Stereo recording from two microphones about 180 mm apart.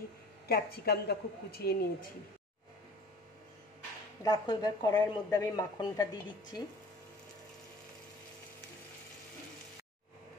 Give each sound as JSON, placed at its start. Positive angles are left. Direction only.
{"t": 0.5, "sound": "a woman's voice", "side_deg": 60}
{"t": 4.2, "sound": "speech", "side_deg": 20}